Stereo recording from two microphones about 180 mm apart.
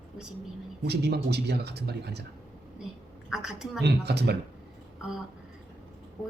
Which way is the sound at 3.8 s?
65° right (ahead or behind).